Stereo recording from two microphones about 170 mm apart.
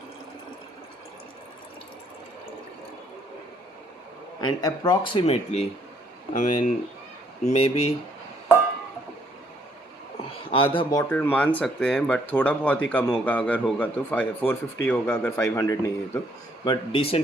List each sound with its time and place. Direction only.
4.4 s speech: 25° left (ahead or behind)
10.5 s speech: 30° left (ahead or behind)
11.1 s speech: 10° left (ahead or behind)
16.6 s speech: 30° left (ahead or behind)